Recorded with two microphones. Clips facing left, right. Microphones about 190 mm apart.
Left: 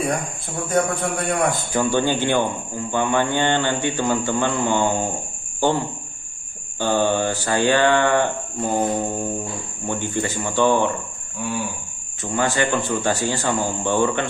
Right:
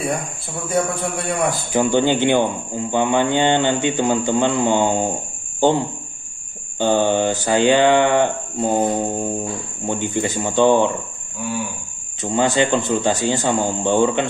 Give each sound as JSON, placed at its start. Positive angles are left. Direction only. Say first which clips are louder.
{"t": 0.7, "sound": "a man's voice", "louder": "even", "side_deg": 0}
{"t": 1.7, "sound": "mantra", "louder": "right 7 dB", "side_deg": -20}
{"t": 6.8, "sound": "mantra", "louder": "right 3 dB", "side_deg": -20}
{"t": 12.2, "sound": "mantra", "louder": "right 4 dB", "side_deg": -20}